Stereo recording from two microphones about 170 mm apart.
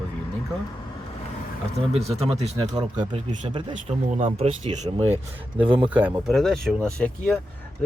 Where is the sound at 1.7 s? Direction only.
40° right (ahead or behind).